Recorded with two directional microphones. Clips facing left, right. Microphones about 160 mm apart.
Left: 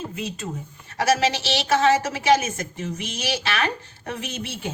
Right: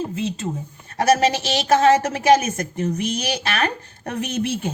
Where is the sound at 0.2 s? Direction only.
25° right (ahead or behind).